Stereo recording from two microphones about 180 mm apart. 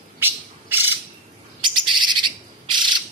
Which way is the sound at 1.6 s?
25° right (ahead or behind).